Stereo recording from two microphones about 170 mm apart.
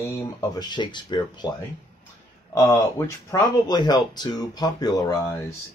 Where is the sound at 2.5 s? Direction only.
15° left (ahead or behind).